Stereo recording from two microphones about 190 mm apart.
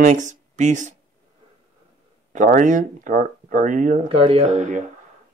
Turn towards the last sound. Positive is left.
turn(degrees=-35)  # may be behind; listen again after turning